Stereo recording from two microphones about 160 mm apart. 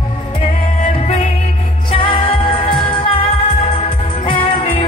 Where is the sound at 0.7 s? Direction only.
45° left (ahead or behind).